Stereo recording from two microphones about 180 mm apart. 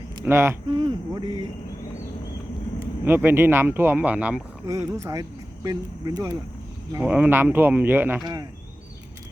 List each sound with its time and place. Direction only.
0.3 s speech: 15° right (ahead or behind)
3.0 s speech: 10° right (ahead or behind)
6.9 s speech: 10° right (ahead or behind)